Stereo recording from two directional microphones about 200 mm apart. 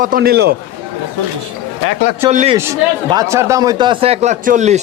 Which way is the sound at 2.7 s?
15° right (ahead or behind).